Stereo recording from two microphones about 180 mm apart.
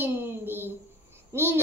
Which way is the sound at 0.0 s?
10° right (ahead or behind).